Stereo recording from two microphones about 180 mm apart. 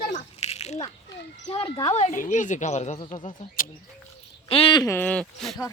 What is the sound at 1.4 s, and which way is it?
Speech, 25° left (ahead or behind).